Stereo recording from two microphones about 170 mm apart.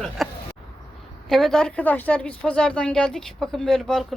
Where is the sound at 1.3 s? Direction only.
5° left (ahead or behind).